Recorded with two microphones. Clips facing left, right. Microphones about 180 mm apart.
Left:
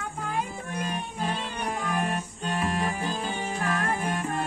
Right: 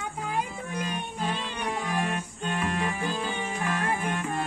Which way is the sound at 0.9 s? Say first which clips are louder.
Even; 35° left (ahead or behind).